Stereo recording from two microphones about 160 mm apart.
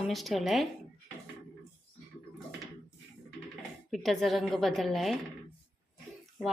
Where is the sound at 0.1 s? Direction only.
Centre (ahead or behind).